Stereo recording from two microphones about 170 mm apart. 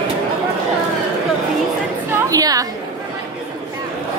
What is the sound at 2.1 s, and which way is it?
Chatter, 20° right (ahead or behind).